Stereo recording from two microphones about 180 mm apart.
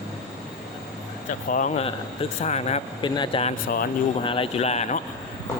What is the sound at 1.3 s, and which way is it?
Speech, 45° left (ahead or behind).